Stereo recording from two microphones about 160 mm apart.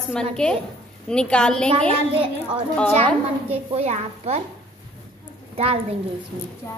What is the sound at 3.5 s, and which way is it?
Speech, 40° right (ahead or behind).